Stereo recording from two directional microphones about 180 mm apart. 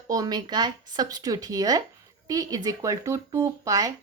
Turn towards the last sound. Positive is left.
turn(degrees=-20)  # may be behind; listen again after turning